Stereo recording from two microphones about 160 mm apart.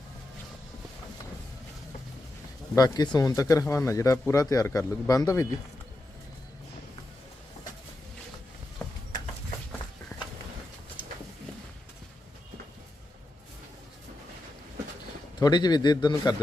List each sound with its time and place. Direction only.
2.7 s speech: 25° left (ahead or behind)
8.8 s a sound: 15° left (ahead or behind)
15.4 s speech: 25° left (ahead or behind)